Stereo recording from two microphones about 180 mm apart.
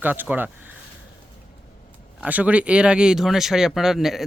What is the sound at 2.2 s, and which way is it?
Speech, 10° right (ahead or behind).